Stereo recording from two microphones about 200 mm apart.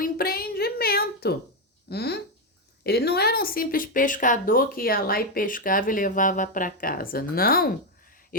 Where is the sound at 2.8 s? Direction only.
55° left (ahead or behind).